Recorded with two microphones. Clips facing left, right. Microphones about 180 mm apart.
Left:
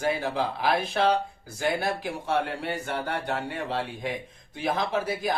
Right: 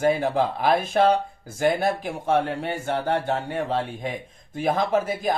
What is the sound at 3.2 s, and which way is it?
Speech, 45° right (ahead or behind).